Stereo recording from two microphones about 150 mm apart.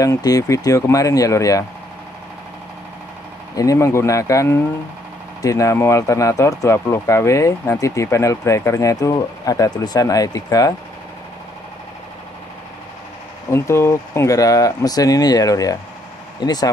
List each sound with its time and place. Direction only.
0.0 s speech: 25° left (ahead or behind)
3.5 s speech: 20° left (ahead or behind)
13.5 s speech: 15° left (ahead or behind)